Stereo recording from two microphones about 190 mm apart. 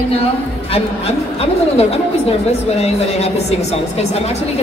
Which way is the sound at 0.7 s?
30° left (ahead or behind).